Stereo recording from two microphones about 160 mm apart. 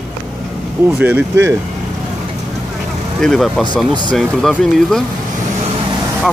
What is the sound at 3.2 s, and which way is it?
Speech, centre (ahead or behind).